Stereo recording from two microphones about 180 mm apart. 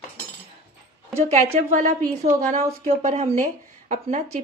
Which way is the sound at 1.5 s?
45° right (ahead or behind).